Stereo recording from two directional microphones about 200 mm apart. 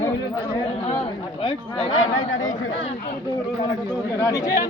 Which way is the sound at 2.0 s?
85° left.